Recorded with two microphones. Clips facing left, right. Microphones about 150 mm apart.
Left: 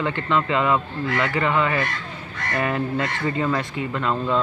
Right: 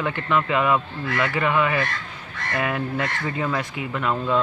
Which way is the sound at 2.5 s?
5° right (ahead or behind).